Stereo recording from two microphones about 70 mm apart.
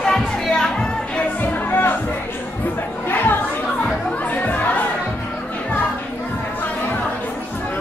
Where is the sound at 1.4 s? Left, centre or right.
Left.